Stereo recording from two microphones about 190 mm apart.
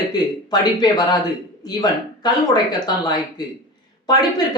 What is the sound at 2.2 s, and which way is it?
Speech, 20° left (ahead or behind).